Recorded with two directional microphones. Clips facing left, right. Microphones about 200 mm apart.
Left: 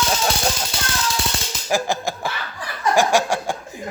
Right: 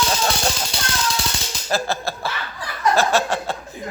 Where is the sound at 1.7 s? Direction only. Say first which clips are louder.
Left 2 dB; 15° left (ahead or behind).